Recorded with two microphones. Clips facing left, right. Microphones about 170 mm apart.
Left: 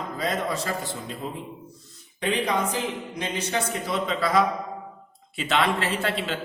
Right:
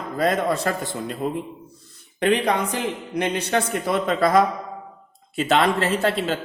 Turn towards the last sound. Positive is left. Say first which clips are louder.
# right 5 dB
turn(degrees=-40)  # may be behind; listen again after turning